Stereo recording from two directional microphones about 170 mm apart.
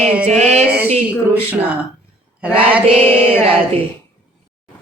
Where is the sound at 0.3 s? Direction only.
40° right (ahead or behind).